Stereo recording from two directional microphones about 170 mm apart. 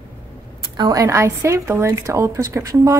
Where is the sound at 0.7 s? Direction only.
20° right (ahead or behind).